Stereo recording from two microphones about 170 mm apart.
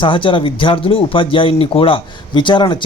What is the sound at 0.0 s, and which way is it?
Speech, 30° left (ahead or behind).